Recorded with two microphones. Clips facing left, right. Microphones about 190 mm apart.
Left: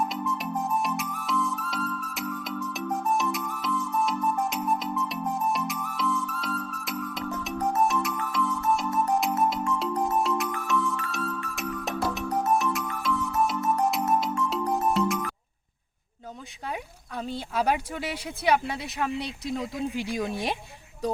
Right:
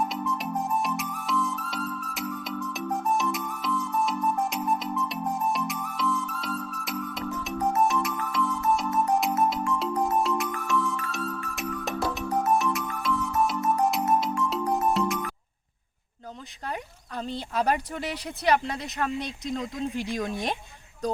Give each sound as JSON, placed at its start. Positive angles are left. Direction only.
{"t": 0.1, "sound": "music", "side_deg": 0}
{"t": 17.2, "sound": "speech", "side_deg": 5}